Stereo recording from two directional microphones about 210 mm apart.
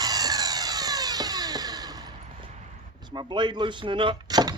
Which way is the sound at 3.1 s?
20° right (ahead or behind).